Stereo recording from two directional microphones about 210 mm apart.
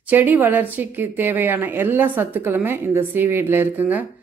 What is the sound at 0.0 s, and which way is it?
A woman's voice, 10° right (ahead or behind).